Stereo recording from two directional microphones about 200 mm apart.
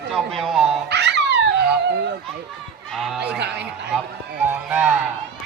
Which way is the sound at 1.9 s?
55° right (ahead or behind).